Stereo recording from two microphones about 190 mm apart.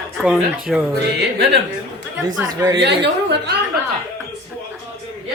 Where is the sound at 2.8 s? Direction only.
65° right (ahead or behind).